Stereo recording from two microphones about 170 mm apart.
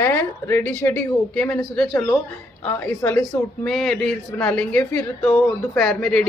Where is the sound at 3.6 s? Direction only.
5° left (ahead or behind).